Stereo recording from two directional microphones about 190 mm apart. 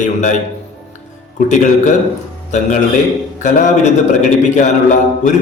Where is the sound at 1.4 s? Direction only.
40° left (ahead or behind).